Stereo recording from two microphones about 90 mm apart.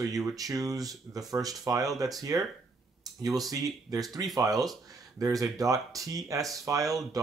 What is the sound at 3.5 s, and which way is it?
Speech, 40° right (ahead or behind).